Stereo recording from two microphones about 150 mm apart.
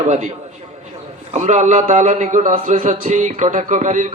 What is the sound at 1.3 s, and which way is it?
A man's voice, 50° right (ahead or behind).